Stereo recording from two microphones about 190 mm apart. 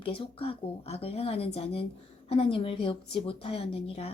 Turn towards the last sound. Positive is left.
turn(degrees=30)  # may be behind; listen again after turning